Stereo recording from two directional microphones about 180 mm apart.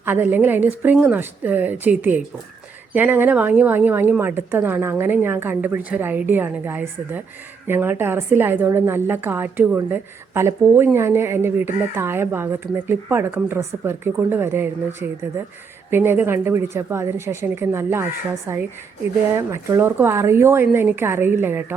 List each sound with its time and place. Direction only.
0.0 s a woman's voice: 10° right (ahead or behind)